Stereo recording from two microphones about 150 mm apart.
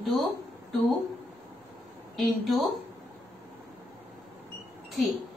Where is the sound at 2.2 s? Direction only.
Centre (ahead or behind).